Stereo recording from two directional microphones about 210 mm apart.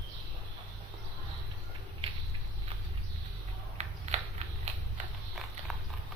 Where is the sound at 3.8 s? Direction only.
30° right (ahead or behind).